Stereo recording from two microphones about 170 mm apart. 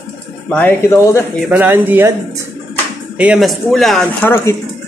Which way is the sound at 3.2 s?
5° right (ahead or behind).